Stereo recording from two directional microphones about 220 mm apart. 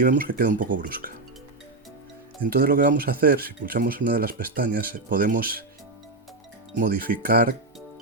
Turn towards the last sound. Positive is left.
turn(degrees=-45)  # may be behind; listen again after turning